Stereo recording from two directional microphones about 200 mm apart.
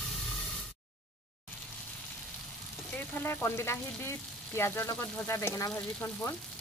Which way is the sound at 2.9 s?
10° left (ahead or behind).